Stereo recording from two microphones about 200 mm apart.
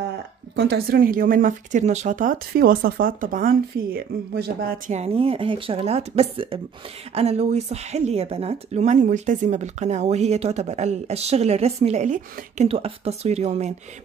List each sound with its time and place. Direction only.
0.6 s speech: 55° right (ahead or behind); by 13.7 s 35° right (ahead or behind)